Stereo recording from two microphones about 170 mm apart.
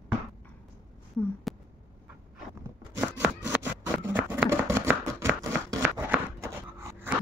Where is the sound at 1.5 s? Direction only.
Centre (ahead or behind).